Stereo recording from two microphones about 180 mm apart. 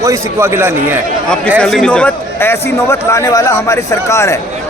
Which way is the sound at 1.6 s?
5° left (ahead or behind).